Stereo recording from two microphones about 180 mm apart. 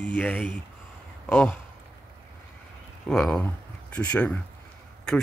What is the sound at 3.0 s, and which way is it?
Speech, 5° left (ahead or behind).